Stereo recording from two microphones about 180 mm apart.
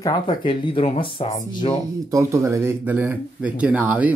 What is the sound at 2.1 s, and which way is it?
Speech, 15° right (ahead or behind).